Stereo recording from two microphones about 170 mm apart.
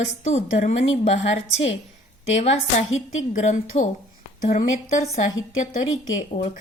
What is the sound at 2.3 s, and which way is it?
A woman's voice, 40° left (ahead or behind).